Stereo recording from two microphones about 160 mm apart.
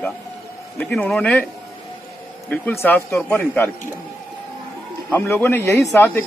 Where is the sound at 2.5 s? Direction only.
15° left (ahead or behind).